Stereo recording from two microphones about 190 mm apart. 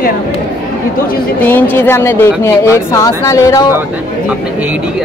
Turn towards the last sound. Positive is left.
turn(degrees=15)  # may be behind; listen again after turning